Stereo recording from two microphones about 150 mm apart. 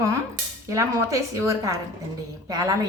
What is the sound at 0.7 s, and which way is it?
A woman's voice, 20° right (ahead or behind).